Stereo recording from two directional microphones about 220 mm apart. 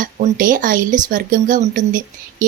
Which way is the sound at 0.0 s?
40° right (ahead or behind).